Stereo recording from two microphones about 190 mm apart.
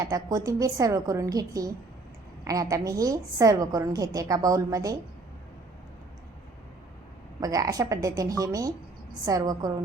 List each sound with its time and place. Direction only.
0.0 s a woman's voice: 20° right (ahead or behind)
7.4 s a woman's voice: 20° right (ahead or behind)